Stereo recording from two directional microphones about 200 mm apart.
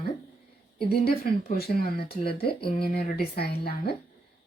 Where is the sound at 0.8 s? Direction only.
50° left (ahead or behind).